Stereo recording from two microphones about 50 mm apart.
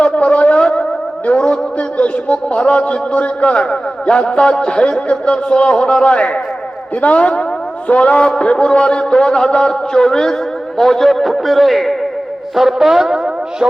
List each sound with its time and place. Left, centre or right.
0.0 s a sound: left
2.0 s a man's voice: left; by 11.9 s centre
12.5 s music: centre